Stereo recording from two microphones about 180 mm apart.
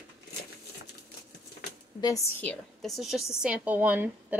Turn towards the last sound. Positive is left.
turn(degrees=-10)  # may be behind; listen again after turning